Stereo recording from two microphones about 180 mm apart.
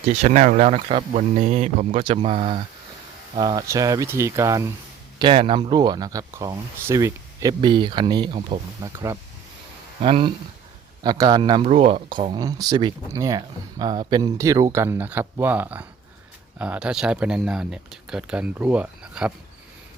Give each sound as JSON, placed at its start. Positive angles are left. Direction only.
{"t": 0.2, "sound": "speech", "side_deg": -40}
{"t": 3.3, "sound": "speech", "side_deg": -20}
{"t": 5.2, "sound": "speech", "side_deg": -30}
{"t": 10.0, "sound": "speech", "side_deg": -30}